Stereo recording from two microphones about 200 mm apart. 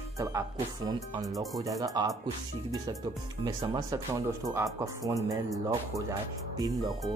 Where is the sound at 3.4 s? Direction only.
20° right (ahead or behind).